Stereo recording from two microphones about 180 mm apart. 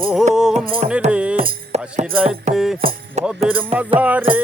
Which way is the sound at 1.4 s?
40° right (ahead or behind).